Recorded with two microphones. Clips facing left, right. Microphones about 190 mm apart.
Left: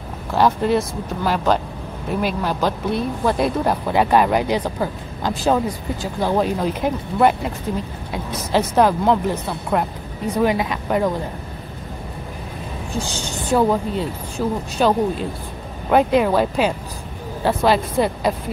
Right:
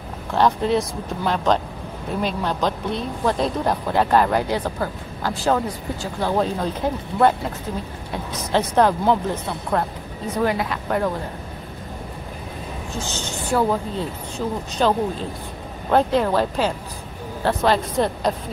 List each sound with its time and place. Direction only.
0.3 s speech: 5° left (ahead or behind)
12.9 s speech: 15° left (ahead or behind)
14.4 s speech: centre (ahead or behind)
14.8 s speech: 10° left (ahead or behind)